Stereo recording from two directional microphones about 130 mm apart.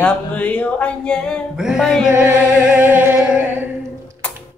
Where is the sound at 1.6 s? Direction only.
5° right (ahead or behind).